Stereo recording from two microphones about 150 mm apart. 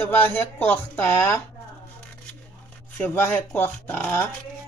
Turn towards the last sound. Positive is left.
turn(degrees=15)  # may be behind; listen again after turning